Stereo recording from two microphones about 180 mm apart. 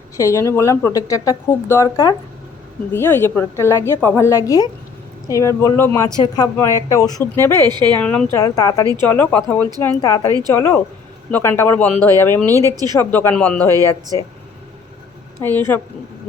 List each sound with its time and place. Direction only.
0.2 s speech: 15° left (ahead or behind)
7.6 s speech: 25° right (ahead or behind)
7.9 s speech: 5° left (ahead or behind)
8.4 s speech: 20° left (ahead or behind)
12.5 s speech: 15° right (ahead or behind)
13.0 s speech: 10° left (ahead or behind)
15.4 s speech: 10° left (ahead or behind)